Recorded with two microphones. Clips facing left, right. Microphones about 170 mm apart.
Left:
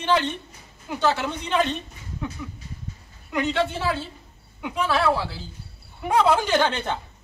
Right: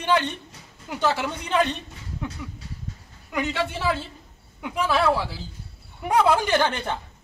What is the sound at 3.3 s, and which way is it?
Speech, 5° right (ahead or behind).